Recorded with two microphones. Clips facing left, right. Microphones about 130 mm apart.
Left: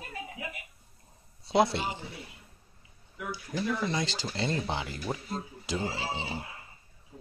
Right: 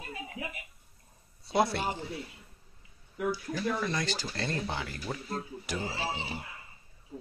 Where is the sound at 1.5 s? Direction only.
20° left (ahead or behind).